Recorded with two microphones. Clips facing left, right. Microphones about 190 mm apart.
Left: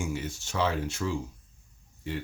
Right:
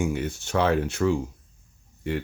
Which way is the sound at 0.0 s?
60° right (ahead or behind).